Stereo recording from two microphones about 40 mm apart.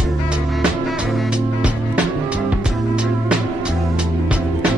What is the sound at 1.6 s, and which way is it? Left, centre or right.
Music, right.